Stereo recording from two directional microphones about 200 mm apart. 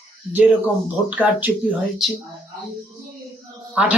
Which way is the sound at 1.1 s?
10° right (ahead or behind).